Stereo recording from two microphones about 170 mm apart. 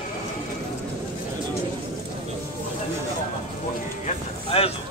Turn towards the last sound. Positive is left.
turn(degrees=35)  # may be behind; listen again after turning